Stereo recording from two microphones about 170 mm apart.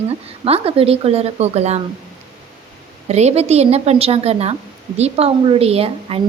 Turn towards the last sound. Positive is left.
turn(degrees=-35)  # may be behind; listen again after turning